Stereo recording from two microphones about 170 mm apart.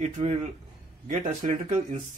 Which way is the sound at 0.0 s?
40° right (ahead or behind).